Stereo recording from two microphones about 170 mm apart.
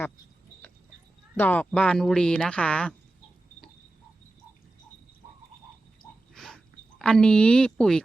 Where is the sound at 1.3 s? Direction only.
10° left (ahead or behind).